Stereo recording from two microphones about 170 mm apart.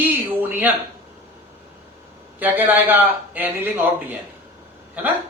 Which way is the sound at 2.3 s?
10° right (ahead or behind).